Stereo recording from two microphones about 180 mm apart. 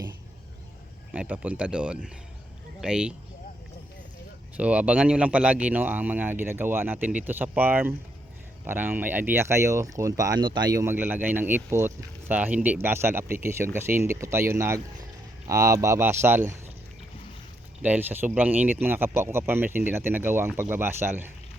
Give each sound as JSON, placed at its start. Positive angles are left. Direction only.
{"t": 1.1, "sound": "speech", "side_deg": -5}
{"t": 4.5, "sound": "speech", "side_deg": -5}
{"t": 17.8, "sound": "speech", "side_deg": -10}